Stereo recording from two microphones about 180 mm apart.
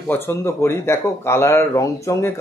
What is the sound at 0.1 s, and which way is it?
Speech, 15° left (ahead or behind).